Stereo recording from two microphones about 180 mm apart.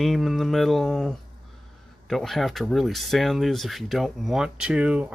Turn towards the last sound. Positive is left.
turn(degrees=-5)  # may be behind; listen again after turning